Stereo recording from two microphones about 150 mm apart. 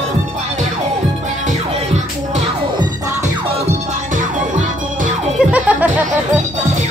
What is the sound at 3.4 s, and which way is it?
Music, 50° right (ahead or behind).